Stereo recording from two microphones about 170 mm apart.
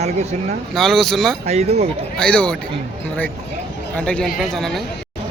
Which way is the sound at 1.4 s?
40° right (ahead or behind).